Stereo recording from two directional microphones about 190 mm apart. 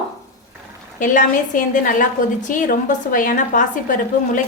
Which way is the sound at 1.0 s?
45° left (ahead or behind).